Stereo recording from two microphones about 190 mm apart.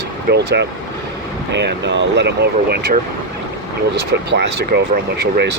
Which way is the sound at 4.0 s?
60° right (ahead or behind).